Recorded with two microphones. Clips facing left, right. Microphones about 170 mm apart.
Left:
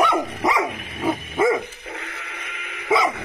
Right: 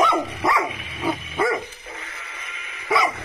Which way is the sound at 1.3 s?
20° left (ahead or behind).